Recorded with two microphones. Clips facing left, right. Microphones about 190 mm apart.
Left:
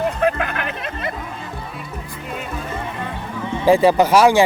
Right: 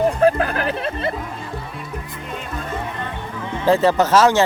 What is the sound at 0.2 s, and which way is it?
Music, 35° right (ahead or behind).